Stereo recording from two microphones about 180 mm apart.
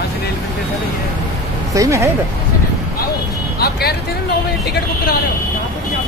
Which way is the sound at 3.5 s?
60° left (ahead or behind).